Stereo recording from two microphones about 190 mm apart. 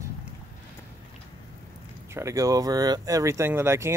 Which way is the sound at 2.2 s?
15° right (ahead or behind).